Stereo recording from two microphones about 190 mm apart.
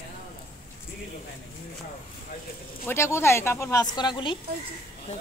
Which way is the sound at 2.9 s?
15° left (ahead or behind).